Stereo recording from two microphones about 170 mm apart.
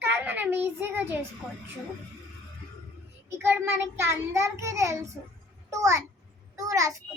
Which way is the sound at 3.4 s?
15° right (ahead or behind).